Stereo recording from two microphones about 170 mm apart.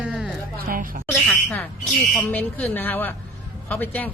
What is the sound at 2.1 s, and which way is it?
Speech, 10° left (ahead or behind).